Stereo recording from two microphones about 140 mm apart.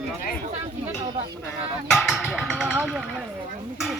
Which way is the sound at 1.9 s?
Centre (ahead or behind).